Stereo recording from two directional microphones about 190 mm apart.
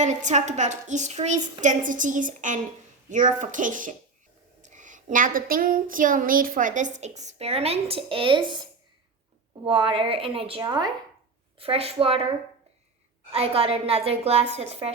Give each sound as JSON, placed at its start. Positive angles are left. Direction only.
{"t": 0.0, "sound": "speech", "side_deg": -40}
{"t": 9.6, "sound": "a woman's voice", "side_deg": -25}
{"t": 13.3, "sound": "speech", "side_deg": -30}